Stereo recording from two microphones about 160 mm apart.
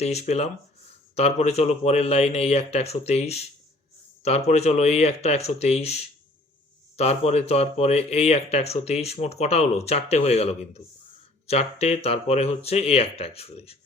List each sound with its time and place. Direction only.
0.0 s speech: 40° left (ahead or behind)